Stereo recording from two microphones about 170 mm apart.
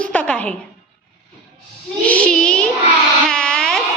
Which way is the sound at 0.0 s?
5° left (ahead or behind).